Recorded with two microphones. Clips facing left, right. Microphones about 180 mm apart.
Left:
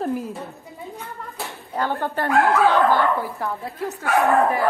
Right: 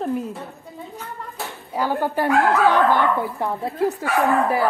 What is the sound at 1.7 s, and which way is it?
Speech, 10° right (ahead or behind).